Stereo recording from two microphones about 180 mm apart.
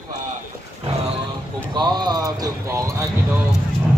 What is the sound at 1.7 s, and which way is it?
Speech, 20° right (ahead or behind).